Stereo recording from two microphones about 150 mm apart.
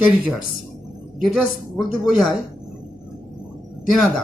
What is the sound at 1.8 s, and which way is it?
Speech, 5° right (ahead or behind).